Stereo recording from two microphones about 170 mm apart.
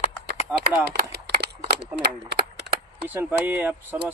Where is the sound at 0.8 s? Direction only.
75° right (ahead or behind).